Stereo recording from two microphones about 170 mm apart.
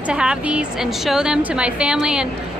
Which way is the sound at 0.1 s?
5° right (ahead or behind).